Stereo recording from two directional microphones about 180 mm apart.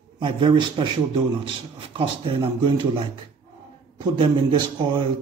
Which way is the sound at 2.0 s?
30° right (ahead or behind).